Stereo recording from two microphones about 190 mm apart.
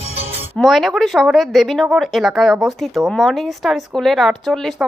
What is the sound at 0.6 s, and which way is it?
Speech, centre (ahead or behind).